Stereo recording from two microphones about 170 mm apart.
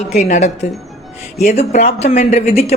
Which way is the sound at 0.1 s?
45° left (ahead or behind).